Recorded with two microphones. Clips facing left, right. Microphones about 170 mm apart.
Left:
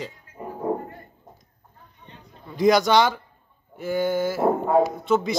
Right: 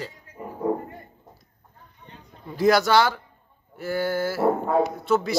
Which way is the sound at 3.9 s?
15° left (ahead or behind).